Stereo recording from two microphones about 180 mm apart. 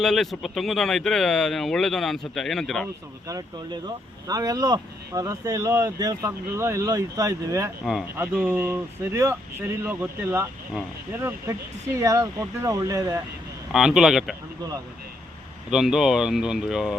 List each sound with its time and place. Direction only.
0.0 s speech: centre (ahead or behind)
3.2 s speech: 20° right (ahead or behind)
13.7 s speech: centre (ahead or behind)
15.7 s speech: 5° right (ahead or behind)